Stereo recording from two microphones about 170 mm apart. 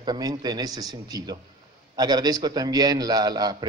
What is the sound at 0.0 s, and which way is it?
A man's voice, 25° right (ahead or behind).